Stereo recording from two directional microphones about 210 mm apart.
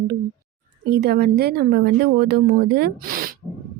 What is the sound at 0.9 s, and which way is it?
A woman's voice, 50° right (ahead or behind).